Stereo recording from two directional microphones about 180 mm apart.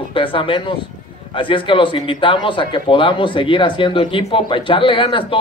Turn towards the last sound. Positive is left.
turn(degrees=30)  # may be behind; listen again after turning